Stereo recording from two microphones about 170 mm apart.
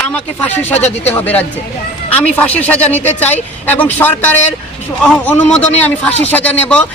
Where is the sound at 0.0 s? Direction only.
10° left (ahead or behind).